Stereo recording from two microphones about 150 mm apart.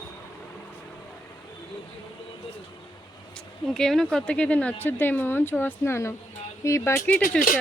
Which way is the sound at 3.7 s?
5° left (ahead or behind).